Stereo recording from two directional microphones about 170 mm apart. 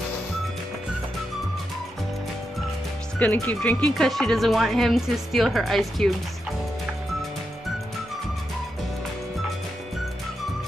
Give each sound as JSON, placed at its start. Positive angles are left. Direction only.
{"t": 3.2, "sound": "speech", "side_deg": 10}